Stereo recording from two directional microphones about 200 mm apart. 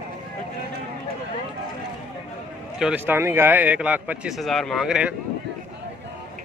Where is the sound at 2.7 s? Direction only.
5° right (ahead or behind).